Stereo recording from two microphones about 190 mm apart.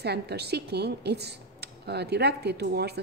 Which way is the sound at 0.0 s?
60° right (ahead or behind).